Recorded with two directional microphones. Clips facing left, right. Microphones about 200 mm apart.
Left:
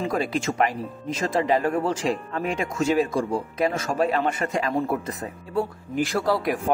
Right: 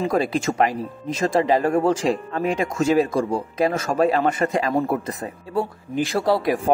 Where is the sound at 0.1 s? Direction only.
35° right (ahead or behind).